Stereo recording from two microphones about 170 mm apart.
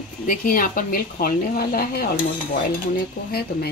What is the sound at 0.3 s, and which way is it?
Speech, 55° left (ahead or behind).